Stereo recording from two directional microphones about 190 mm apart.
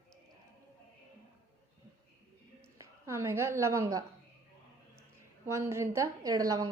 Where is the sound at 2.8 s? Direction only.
15° right (ahead or behind).